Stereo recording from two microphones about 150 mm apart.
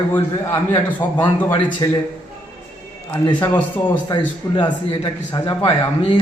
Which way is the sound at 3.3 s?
15° left (ahead or behind).